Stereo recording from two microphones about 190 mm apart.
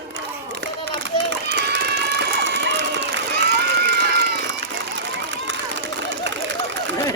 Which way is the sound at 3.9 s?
60° right (ahead or behind).